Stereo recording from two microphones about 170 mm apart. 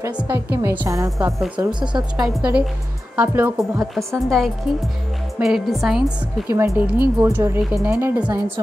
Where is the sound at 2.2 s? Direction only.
10° right (ahead or behind).